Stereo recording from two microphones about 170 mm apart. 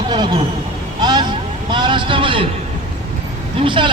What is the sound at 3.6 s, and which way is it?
Speech, 30° right (ahead or behind).